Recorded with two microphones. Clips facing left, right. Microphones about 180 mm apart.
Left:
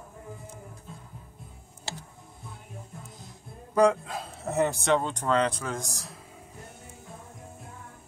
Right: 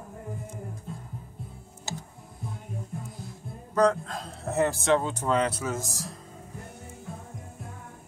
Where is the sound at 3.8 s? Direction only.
10° left (ahead or behind).